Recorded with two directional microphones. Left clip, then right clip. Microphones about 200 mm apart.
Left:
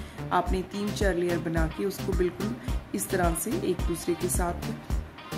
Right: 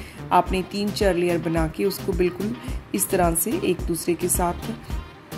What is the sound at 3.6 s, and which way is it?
Speech, 20° right (ahead or behind).